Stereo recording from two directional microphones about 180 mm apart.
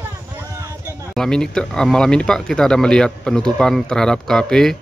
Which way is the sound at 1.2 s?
5° left (ahead or behind).